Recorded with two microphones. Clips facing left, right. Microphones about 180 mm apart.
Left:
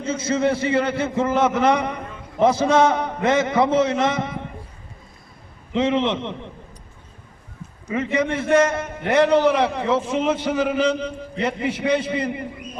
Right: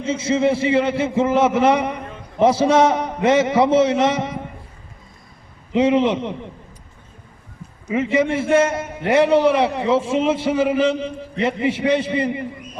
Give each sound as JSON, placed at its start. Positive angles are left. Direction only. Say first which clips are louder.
{"t": 0.3, "sound": "a man's voice", "louder": "right 3 dB", "side_deg": 0}
{"t": 3.6, "sound": "a man's voice", "louder": "right 3 dB", "side_deg": -30}
{"t": 5.7, "sound": "a man's voice", "louder": "right 4 dB", "side_deg": -10}
{"t": 7.9, "sound": "a man's voice", "louder": "right 3 dB", "side_deg": -5}